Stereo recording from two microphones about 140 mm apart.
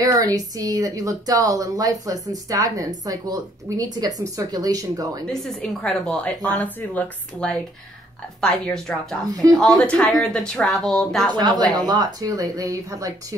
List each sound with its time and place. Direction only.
0.0 s speech: 25° right (ahead or behind)
5.4 s speech: 10° left (ahead or behind)
9.3 s speech: 25° right (ahead or behind)
9.6 s speech: 5° left (ahead or behind)
11.3 s speech: 30° right (ahead or behind)